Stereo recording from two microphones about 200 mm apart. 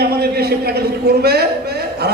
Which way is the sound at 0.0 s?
50° right (ahead or behind).